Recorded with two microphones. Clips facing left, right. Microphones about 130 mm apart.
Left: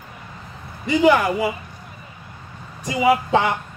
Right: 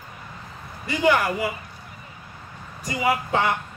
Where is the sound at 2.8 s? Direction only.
20° left (ahead or behind).